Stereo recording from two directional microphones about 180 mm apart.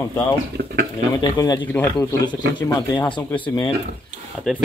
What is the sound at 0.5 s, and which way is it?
Speech, 60° right (ahead or behind).